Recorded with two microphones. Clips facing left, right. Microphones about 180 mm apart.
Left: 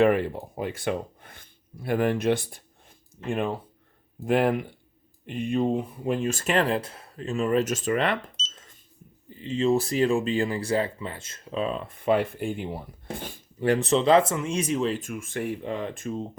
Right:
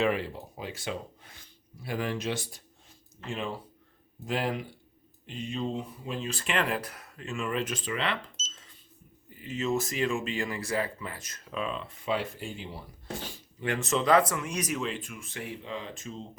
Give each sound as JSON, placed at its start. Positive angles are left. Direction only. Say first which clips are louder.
{"t": 0.0, "sound": "speech", "louder": "left 7 dB", "side_deg": 55}
{"t": 9.3, "sound": "speech", "louder": "left 7 dB", "side_deg": 30}
{"t": 11.8, "sound": "speech", "louder": "left 8 dB", "side_deg": 50}
{"t": 13.7, "sound": "speech", "louder": "left 5 dB", "side_deg": 35}